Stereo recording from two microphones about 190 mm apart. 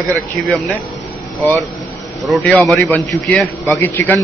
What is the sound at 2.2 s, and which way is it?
A man's voice, 5° left (ahead or behind).